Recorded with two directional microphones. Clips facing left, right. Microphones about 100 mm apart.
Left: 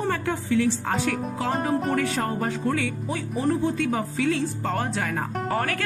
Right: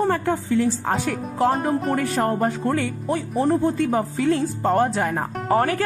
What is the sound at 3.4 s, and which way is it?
Speech, 40° right (ahead or behind).